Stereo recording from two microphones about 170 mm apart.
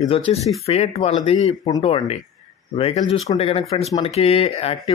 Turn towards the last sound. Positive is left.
turn(degrees=35)  # may be behind; listen again after turning